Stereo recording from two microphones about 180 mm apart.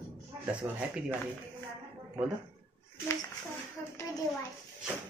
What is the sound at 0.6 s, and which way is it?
Speech, 15° right (ahead or behind).